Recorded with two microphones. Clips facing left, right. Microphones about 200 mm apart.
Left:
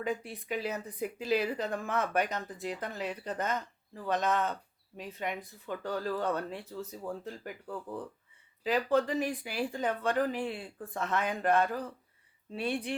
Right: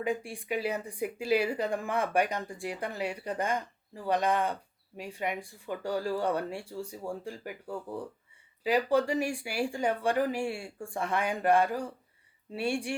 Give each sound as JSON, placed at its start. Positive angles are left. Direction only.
{"t": 0.0, "sound": "speech", "side_deg": -10}